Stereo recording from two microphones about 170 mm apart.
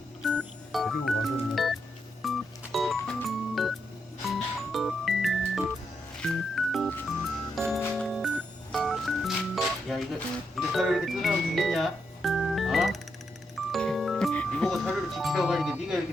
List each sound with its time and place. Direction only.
0.3 s music: centre (ahead or behind)
7.8 s music: 10° left (ahead or behind)
8.0 s music: centre (ahead or behind)